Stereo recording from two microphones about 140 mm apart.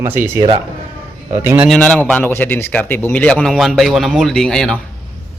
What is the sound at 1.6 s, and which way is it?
A man's voice, 5° left (ahead or behind).